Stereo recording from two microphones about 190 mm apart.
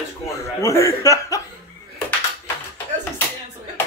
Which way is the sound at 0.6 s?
15° left (ahead or behind).